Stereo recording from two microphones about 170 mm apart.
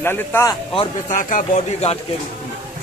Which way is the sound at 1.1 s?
50° left (ahead or behind).